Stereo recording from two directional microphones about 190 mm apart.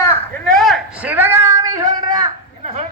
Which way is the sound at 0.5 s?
Centre (ahead or behind).